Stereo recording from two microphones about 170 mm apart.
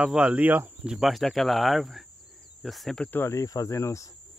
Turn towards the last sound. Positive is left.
turn(degrees=15)  # may be behind; listen again after turning